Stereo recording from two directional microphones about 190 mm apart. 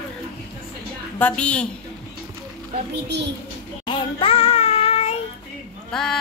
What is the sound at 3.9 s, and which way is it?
Child singing, 25° left (ahead or behind).